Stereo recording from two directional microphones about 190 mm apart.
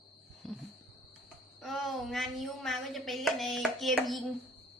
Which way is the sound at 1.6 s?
Centre (ahead or behind).